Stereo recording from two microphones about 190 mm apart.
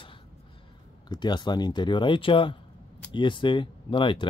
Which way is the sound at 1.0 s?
20° left (ahead or behind).